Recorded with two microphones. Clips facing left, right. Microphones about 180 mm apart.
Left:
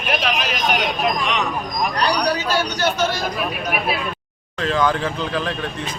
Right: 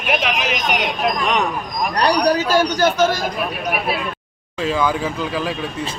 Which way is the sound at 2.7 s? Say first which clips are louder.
Right 4 dB; 45° right (ahead or behind).